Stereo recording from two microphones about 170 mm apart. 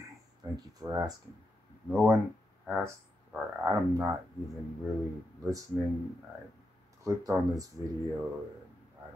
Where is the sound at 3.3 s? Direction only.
15° right (ahead or behind).